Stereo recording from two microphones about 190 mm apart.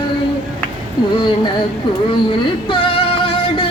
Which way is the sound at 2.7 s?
25° left (ahead or behind).